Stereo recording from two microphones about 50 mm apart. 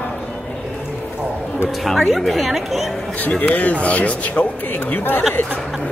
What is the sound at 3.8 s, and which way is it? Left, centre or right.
A man's voice, left.